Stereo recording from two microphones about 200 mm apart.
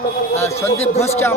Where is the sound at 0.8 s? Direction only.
30° left (ahead or behind).